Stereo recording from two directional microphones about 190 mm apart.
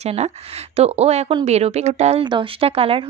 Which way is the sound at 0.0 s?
35° right (ahead or behind).